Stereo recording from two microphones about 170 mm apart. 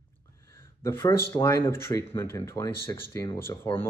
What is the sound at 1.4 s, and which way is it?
Speech, 15° left (ahead or behind).